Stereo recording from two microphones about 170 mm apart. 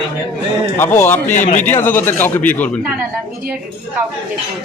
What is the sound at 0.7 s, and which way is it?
Speech, 15° left (ahead or behind).